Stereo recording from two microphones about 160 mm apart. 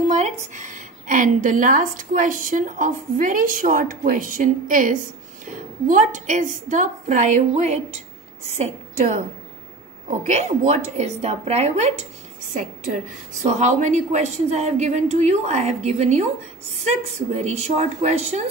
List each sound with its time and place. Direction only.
0.1 s a woman's voice: 50° right (ahead or behind)